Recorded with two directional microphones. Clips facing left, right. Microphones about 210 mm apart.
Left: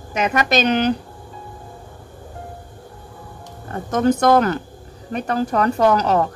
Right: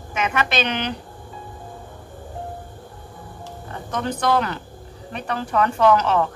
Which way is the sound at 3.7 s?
45° left (ahead or behind).